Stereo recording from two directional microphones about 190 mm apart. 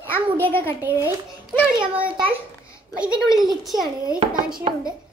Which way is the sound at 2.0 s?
10° right (ahead or behind).